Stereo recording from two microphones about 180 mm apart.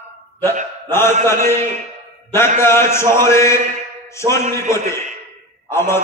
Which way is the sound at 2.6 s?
15° left (ahead or behind).